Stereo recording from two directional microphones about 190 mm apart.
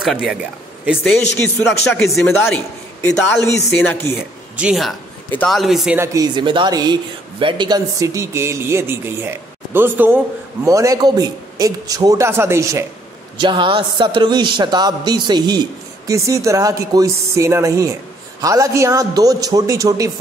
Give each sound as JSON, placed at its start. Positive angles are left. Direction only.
{"t": 0.0, "sound": "speech", "side_deg": 0}
{"t": 1.3, "sound": "a man's voice", "side_deg": 10}
{"t": 4.6, "sound": "a man's voice", "side_deg": -5}
{"t": 5.9, "sound": "a man's voice", "side_deg": -20}
{"t": 13.4, "sound": "a man's voice", "side_deg": -25}